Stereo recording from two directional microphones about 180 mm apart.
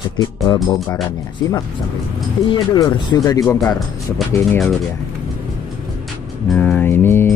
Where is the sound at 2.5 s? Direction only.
25° left (ahead or behind).